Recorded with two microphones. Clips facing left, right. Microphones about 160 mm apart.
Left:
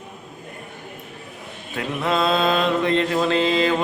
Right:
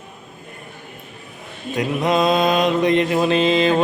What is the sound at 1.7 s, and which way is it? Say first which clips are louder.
Mantra: right 4 dB; 15° right (ahead or behind).